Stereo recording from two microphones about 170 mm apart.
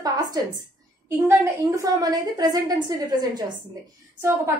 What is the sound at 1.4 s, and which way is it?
A woman's voice, 20° right (ahead or behind).